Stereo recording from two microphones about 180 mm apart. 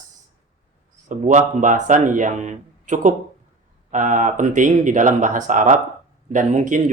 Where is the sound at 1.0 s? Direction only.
45° right (ahead or behind).